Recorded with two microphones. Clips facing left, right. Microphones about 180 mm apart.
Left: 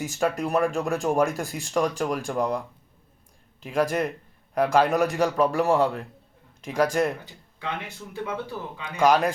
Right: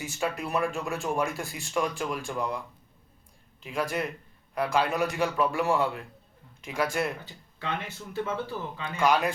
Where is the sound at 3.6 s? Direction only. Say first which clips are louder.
Left 6 dB; 45° left (ahead or behind).